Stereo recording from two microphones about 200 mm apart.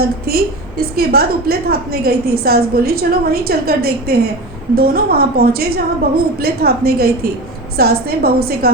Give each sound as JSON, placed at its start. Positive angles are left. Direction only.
{"t": 0.0, "sound": "a woman's voice", "side_deg": -50}